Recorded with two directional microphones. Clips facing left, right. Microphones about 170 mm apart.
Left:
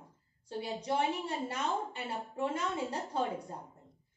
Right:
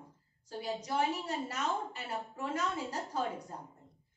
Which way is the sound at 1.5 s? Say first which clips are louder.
Left 1 dB; 30° left (ahead or behind).